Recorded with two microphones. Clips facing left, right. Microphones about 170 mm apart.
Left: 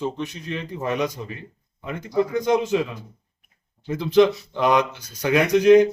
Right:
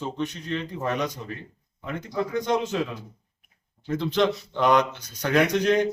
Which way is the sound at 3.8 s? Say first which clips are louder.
Left 6 dB; 10° left (ahead or behind).